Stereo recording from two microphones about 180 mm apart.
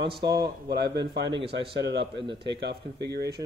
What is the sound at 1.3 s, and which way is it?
Speech, 30° right (ahead or behind).